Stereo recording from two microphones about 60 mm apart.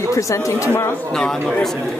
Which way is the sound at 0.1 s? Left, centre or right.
Left.